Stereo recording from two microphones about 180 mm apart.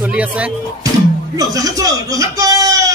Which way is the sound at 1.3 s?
20° right (ahead or behind).